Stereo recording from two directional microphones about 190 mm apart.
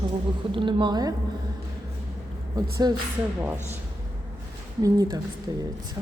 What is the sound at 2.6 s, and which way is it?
Speech, 20° right (ahead or behind).